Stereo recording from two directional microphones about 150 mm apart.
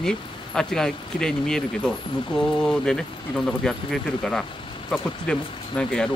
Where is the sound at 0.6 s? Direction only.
5° left (ahead or behind).